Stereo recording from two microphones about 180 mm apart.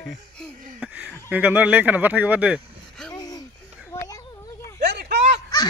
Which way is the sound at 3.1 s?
20° left (ahead or behind).